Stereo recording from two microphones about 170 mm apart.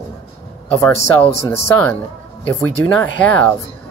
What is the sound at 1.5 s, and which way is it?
Speech, 10° left (ahead or behind).